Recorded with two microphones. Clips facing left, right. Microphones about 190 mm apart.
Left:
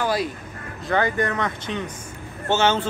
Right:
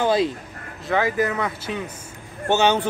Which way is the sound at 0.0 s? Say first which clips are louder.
Right 4 dB; 25° right (ahead or behind).